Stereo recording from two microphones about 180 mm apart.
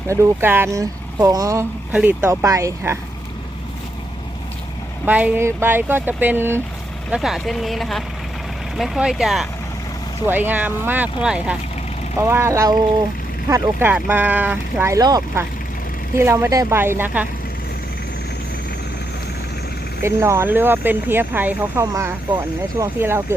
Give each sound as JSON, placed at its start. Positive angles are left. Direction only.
{"t": 0.1, "sound": "speech", "side_deg": -15}
{"t": 5.0, "sound": "speech", "side_deg": -10}
{"t": 20.0, "sound": "speech", "side_deg": -15}